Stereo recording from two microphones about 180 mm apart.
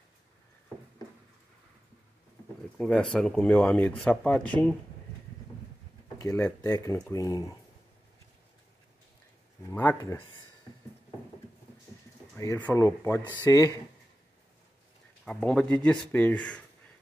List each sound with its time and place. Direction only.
2.8 s speech: 5° left (ahead or behind)
6.1 s speech: 15° left (ahead or behind)
9.7 s speech: 15° left (ahead or behind)
12.4 s speech: 15° left (ahead or behind)
15.2 s speech: 5° left (ahead or behind)